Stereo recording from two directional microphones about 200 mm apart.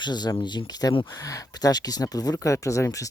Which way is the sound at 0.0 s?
20° left (ahead or behind).